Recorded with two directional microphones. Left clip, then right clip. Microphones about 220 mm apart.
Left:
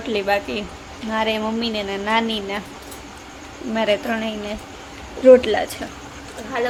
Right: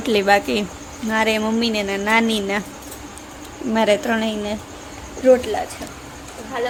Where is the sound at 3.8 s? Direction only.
20° right (ahead or behind).